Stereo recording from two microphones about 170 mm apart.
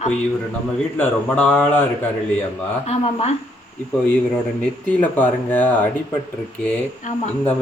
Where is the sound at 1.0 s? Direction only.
10° left (ahead or behind).